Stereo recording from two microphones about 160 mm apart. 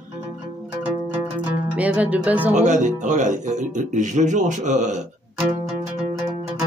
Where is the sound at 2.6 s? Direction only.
50° right (ahead or behind).